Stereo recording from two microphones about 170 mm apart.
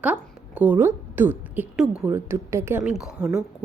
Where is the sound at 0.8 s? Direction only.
10° right (ahead or behind).